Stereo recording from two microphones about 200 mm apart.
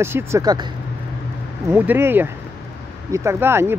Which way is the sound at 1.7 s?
10° right (ahead or behind).